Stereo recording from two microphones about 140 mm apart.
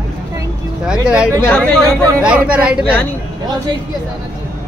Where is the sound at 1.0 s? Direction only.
5° right (ahead or behind).